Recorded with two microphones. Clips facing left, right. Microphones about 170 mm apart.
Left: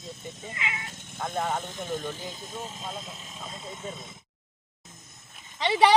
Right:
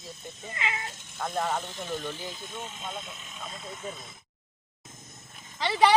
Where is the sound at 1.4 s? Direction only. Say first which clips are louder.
Even; 15° left (ahead or behind).